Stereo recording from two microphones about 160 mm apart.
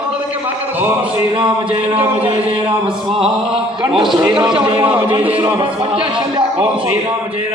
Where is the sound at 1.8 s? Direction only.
10° right (ahead or behind).